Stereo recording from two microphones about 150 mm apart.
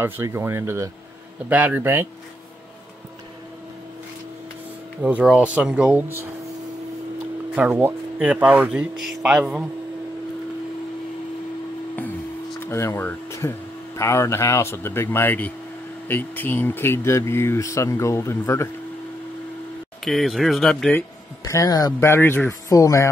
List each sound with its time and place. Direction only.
0.0 s speech: 15° right (ahead or behind)
5.0 s speech: 10° right (ahead or behind)
7.5 s speech: 10° right (ahead or behind)
12.5 s speech: 15° left (ahead or behind)
20.1 s speech: centre (ahead or behind)
21.5 s speech: 25° left (ahead or behind)